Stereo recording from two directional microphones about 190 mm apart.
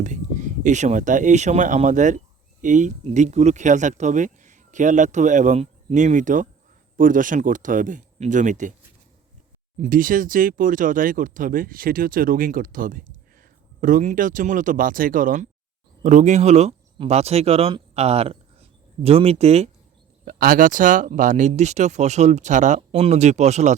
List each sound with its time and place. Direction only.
0.0 s speech: 40° right (ahead or behind)
9.8 s speech: 45° right (ahead or behind)
20.2 s speech: 45° right (ahead or behind)